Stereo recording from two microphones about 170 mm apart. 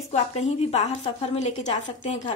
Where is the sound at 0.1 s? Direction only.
40° left (ahead or behind).